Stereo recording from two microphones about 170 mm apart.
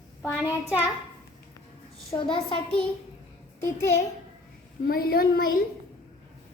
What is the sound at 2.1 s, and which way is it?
Speech, 30° left (ahead or behind).